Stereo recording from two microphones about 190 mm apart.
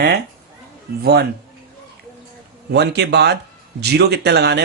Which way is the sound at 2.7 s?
60° right (ahead or behind).